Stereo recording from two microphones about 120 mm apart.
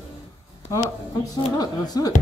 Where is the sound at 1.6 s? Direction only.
35° left (ahead or behind).